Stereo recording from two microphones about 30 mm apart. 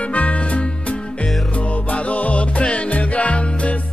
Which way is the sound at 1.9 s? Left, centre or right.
Left.